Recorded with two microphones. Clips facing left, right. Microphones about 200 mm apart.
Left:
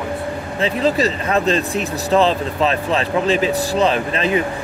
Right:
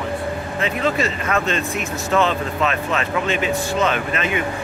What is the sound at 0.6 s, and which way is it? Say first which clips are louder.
Speech: left 4 dB; 35° left (ahead or behind).